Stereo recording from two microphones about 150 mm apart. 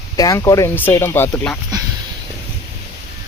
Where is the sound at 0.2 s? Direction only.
20° left (ahead or behind).